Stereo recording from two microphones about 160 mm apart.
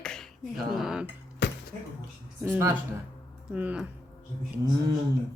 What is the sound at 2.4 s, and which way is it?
A woman's voice, 15° right (ahead or behind).